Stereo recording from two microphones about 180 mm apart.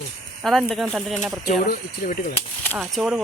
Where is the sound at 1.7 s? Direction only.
50° left (ahead or behind).